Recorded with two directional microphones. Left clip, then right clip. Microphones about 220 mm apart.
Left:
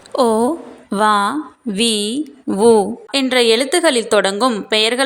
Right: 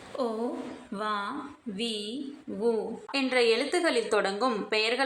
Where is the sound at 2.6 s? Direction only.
45° left (ahead or behind).